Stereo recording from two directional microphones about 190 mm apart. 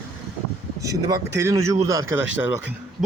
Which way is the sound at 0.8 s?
20° right (ahead or behind).